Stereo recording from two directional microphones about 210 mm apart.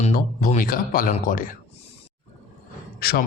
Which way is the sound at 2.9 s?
45° left (ahead or behind).